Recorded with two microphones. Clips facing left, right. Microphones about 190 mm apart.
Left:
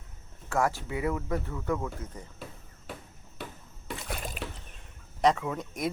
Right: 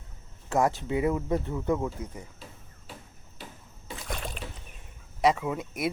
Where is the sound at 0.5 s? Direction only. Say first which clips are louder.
Right 3 dB; 20° right (ahead or behind).